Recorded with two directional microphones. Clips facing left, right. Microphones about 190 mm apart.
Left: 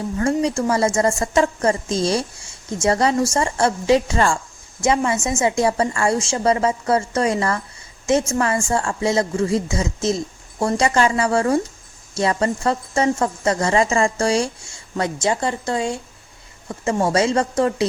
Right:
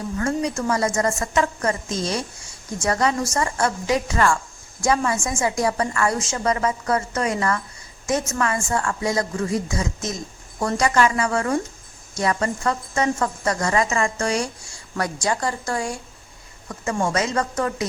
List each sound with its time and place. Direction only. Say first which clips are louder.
0.2 s speech: left 4 dB; 30° left (ahead or behind)